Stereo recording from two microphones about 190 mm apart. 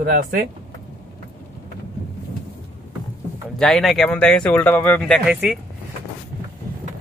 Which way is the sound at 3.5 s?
Centre (ahead or behind).